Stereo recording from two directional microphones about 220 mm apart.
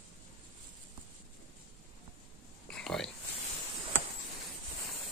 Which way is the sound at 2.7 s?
5° left (ahead or behind).